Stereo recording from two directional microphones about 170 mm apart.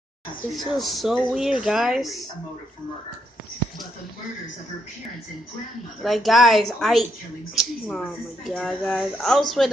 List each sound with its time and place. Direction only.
0.5 s speech: centre (ahead or behind)
6.0 s speech: centre (ahead or behind)